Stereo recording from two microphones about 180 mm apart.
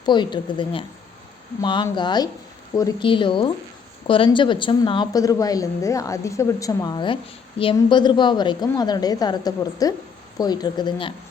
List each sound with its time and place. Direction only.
0.0 s a woman's voice: 25° left (ahead or behind)